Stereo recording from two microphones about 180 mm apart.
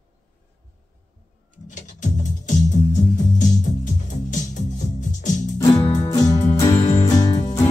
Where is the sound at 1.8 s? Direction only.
45° left (ahead or behind).